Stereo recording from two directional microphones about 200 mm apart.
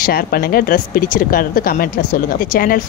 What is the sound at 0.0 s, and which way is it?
Speech, 50° left (ahead or behind).